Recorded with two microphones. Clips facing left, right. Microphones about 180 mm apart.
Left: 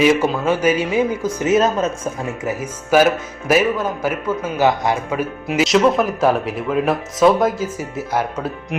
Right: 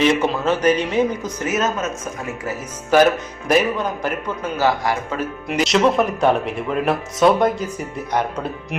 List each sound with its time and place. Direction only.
0.0 s a man's voice: 5° left (ahead or behind)
1.5 s speech: 30° left (ahead or behind)
2.4 s a man's voice: 15° left (ahead or behind)
4.5 s a man's voice: 20° left (ahead or behind)
5.5 s speech: centre (ahead or behind)